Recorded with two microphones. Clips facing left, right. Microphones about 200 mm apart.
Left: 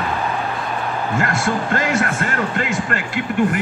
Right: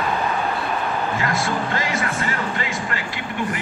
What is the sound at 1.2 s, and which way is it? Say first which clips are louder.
Speech: left 2 dB; 50° left (ahead or behind).